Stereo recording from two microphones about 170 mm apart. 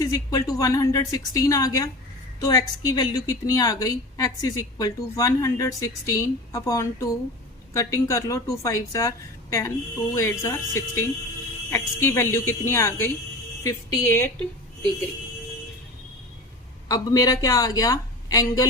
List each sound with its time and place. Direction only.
0.0 s a woman's voice: 20° left (ahead or behind)
16.9 s a woman's voice: 20° left (ahead or behind)